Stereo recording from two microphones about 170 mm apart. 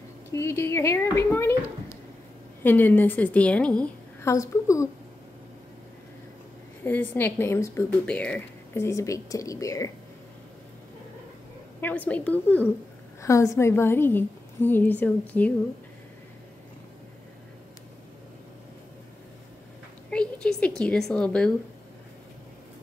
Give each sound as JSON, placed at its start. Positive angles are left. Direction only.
{"t": 0.3, "sound": "speech", "side_deg": 15}
{"t": 6.8, "sound": "speech", "side_deg": 10}
{"t": 11.8, "sound": "speech", "side_deg": 10}
{"t": 20.1, "sound": "a sound", "side_deg": 5}